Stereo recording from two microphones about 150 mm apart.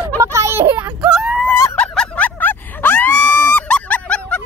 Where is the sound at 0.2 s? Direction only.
20° right (ahead or behind).